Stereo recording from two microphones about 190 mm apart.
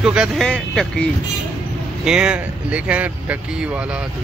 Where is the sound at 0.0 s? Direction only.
5° right (ahead or behind).